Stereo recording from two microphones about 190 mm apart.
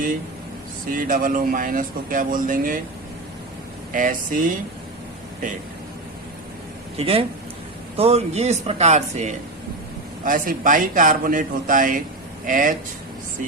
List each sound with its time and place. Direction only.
0.9 s speech: 45° right (ahead or behind)
3.9 s speech: 45° right (ahead or behind)
6.9 s speech: 30° right (ahead or behind)